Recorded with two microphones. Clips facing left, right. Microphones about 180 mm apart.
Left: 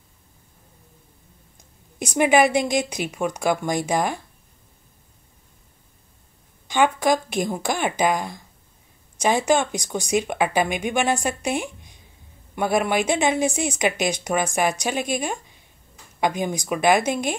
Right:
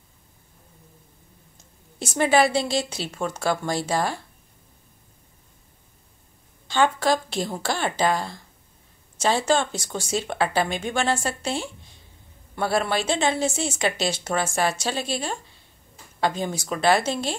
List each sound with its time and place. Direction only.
1.6 s a woman's voice: 15° left (ahead or behind)
6.7 s a woman's voice: 15° left (ahead or behind)